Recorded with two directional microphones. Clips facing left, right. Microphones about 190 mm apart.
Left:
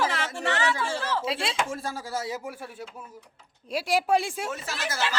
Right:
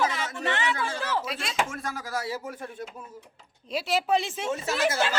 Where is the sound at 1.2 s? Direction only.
30° left (ahead or behind).